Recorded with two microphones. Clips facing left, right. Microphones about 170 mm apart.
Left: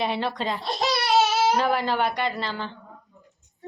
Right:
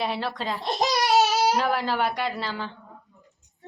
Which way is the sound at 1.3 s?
40° right (ahead or behind).